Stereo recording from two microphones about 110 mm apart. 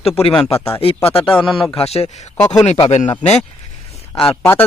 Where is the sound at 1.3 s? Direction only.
10° left (ahead or behind).